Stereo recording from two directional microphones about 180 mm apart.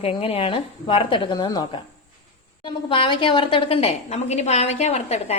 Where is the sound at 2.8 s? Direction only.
30° left (ahead or behind).